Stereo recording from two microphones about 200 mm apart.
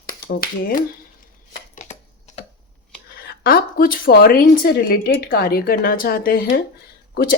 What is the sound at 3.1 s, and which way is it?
Speech, 50° left (ahead or behind).